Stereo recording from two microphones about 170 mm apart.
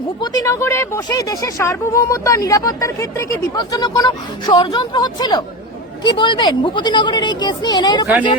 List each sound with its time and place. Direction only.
0.2 s speech: 20° left (ahead or behind)